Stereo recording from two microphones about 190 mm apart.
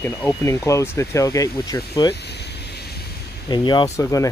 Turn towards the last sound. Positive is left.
turn(degrees=15)  # may be behind; listen again after turning